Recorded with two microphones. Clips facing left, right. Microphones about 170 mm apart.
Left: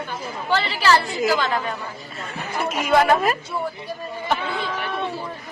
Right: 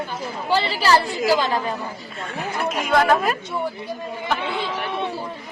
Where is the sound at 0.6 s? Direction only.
40° right (ahead or behind).